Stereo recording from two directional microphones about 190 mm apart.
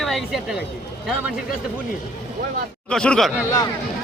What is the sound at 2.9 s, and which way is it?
Speech, 5° left (ahead or behind).